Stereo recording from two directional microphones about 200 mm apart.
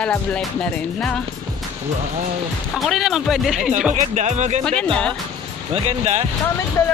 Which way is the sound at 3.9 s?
35° right (ahead or behind).